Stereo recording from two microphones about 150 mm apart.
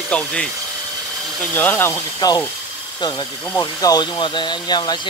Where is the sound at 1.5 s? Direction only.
10° left (ahead or behind).